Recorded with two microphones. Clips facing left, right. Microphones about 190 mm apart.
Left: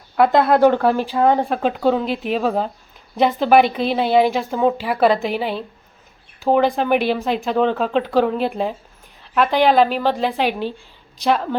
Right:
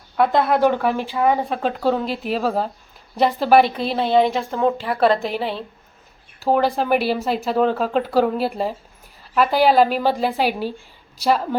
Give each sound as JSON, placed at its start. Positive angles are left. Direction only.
{"t": 0.2, "sound": "a woman's voice", "side_deg": 0}